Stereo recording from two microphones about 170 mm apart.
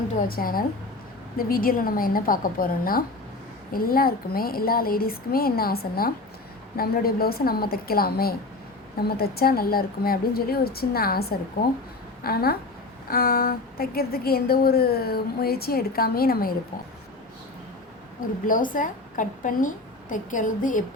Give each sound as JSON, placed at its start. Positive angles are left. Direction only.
{"t": 0.3, "sound": "a woman's voice", "side_deg": 60}
{"t": 18.4, "sound": "a woman's voice", "side_deg": 55}